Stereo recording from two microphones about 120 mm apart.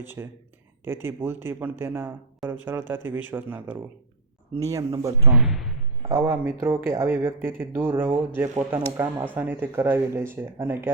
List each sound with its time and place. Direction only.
0.0 s speech: 20° right (ahead or behind)
5.4 s speech: 5° right (ahead or behind)
6.1 s speech: 20° right (ahead or behind)